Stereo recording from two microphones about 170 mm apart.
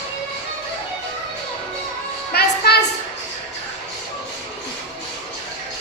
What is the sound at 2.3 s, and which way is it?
Music, 70° left (ahead or behind).